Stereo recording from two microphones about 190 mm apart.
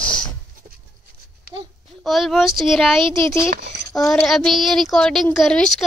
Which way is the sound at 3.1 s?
15° left (ahead or behind).